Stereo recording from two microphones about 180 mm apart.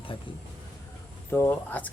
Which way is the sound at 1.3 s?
10° left (ahead or behind).